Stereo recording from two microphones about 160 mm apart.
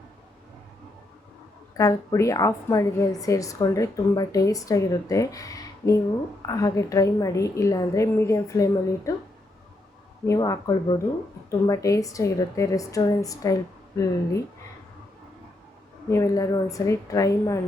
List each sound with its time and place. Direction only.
1.7 s a woman's voice: 20° left (ahead or behind)
10.2 s a woman's voice: 20° left (ahead or behind)
16.0 s a woman's voice: 20° left (ahead or behind)